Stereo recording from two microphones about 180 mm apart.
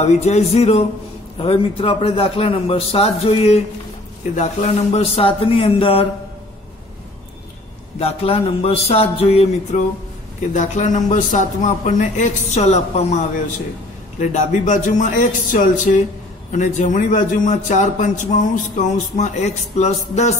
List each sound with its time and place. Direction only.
0.0 s a man's voice: 35° left (ahead or behind)
8.0 s a man's voice: 35° left (ahead or behind)
14.2 s a man's voice: 45° left (ahead or behind)